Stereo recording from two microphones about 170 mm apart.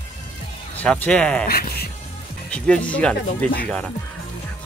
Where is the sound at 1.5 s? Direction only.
65° left (ahead or behind).